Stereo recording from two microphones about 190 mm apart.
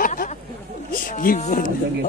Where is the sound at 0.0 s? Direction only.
45° left (ahead or behind).